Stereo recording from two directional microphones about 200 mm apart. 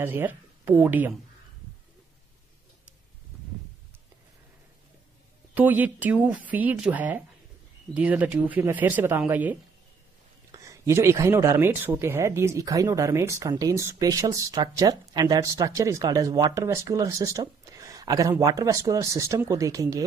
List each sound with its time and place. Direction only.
0.0 s speech: 10° right (ahead or behind)
5.5 s speech: 10° right (ahead or behind)